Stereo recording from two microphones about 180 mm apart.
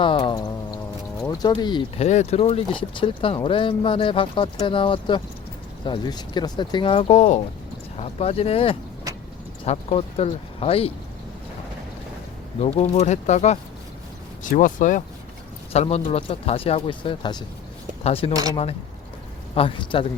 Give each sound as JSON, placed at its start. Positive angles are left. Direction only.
{"t": 0.0, "sound": "speech", "side_deg": 25}
{"t": 2.0, "sound": "speech", "side_deg": 40}
{"t": 9.1, "sound": "vehicle", "side_deg": -20}
{"t": 9.6, "sound": "speech", "side_deg": 35}
{"t": 12.5, "sound": "speech", "side_deg": 35}
{"t": 15.7, "sound": "speech", "side_deg": 35}
{"t": 19.5, "sound": "speech", "side_deg": 30}